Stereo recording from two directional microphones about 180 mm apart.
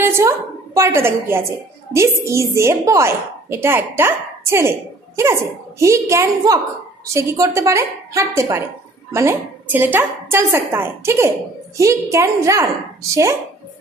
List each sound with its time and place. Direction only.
0.0 s a woman's voice: 15° right (ahead or behind)